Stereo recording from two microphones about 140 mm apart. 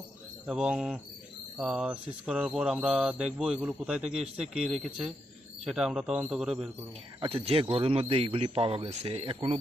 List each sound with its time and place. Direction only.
0.4 s a man's voice: 5° right (ahead or behind)
7.2 s a man's voice: 45° right (ahead or behind)